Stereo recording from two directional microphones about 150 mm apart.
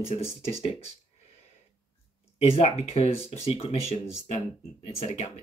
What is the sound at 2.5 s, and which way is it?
Speech, 45° left (ahead or behind).